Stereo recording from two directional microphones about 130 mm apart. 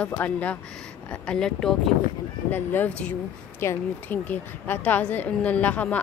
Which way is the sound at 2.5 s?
15° left (ahead or behind).